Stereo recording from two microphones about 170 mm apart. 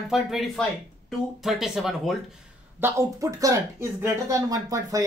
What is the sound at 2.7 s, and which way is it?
Speech, 15° right (ahead or behind).